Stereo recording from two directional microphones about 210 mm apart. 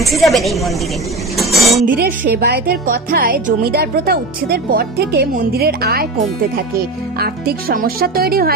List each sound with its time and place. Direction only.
0.0 s a woman's voice: centre (ahead or behind)
1.9 s speech: 40° right (ahead or behind)